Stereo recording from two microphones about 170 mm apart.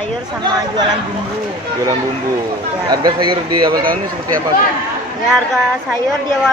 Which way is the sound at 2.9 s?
25° right (ahead or behind).